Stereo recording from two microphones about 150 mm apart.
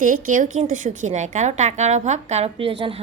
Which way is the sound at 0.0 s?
60° right (ahead or behind).